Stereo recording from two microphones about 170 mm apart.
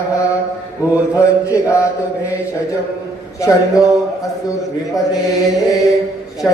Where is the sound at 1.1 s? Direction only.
15° left (ahead or behind).